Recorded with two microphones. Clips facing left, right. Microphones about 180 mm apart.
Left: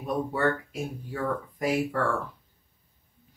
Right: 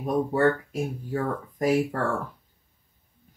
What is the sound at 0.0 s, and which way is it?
Speech, 45° right (ahead or behind).